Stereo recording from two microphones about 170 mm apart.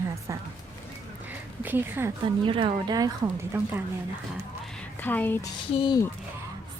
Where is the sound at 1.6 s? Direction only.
10° right (ahead or behind).